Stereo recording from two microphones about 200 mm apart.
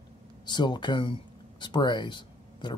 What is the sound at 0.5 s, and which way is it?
Speech, 20° left (ahead or behind).